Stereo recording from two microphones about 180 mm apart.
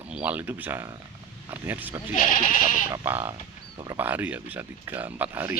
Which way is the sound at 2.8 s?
15° right (ahead or behind).